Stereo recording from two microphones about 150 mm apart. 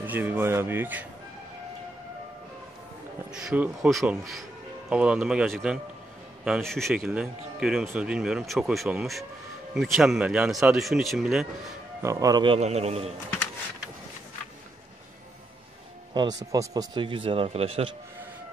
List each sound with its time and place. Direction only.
0.0 s speech: 10° right (ahead or behind)
3.3 s speech: 10° right (ahead or behind)
12.0 s speech: 20° right (ahead or behind)
12.5 s a man's voice: 45° right (ahead or behind)
16.1 s speech: 30° right (ahead or behind)